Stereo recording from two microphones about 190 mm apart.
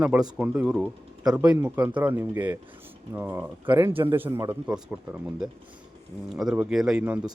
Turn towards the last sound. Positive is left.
turn(degrees=-5)  # may be behind; listen again after turning